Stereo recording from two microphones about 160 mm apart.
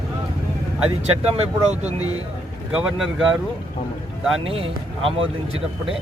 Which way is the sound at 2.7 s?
5° right (ahead or behind).